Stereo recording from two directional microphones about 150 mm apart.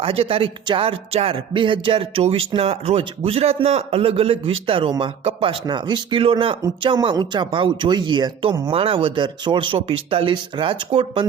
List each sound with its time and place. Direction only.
0.0 s speech: 40° right (ahead or behind)